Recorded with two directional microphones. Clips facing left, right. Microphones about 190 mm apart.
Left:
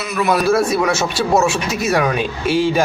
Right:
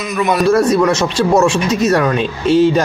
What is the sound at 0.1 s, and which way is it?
Speech, 5° left (ahead or behind).